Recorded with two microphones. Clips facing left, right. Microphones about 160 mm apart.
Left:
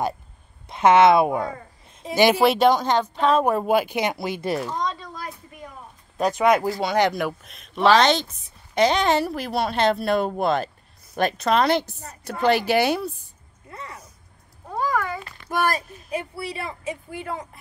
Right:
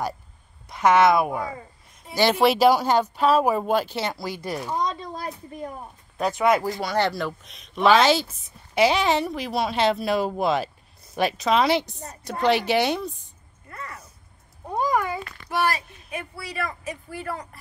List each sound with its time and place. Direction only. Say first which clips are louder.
0.7 s a woman's voice: left 3 dB; 25° left (ahead or behind)
2.1 s speech: left 3 dB; 15° left (ahead or behind)
2.4 s speech: even; centre (ahead or behind)
3.6 s speech: left 3 dB; 10° left (ahead or behind)
4.6 s speech: even; 15° right (ahead or behind)
5.1 s a sound: right 3 dB; 30° right (ahead or behind)
6.3 s a woman's voice: left 1 dB; 20° left (ahead or behind)
7.4 s a woman's voice: even; centre (ahead or behind)
13.7 s a sound: even; 20° left (ahead or behind)
14.7 s a sound: right 1 dB; 15° right (ahead or behind)
15.5 s speech: left 1 dB; 50° left (ahead or behind)
16.1 s a woman's voice: left 5 dB; 30° left (ahead or behind)